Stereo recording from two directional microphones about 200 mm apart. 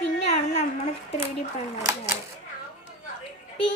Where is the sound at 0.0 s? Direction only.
35° left (ahead or behind).